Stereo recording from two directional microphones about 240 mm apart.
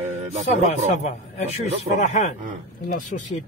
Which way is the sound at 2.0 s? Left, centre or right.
Left.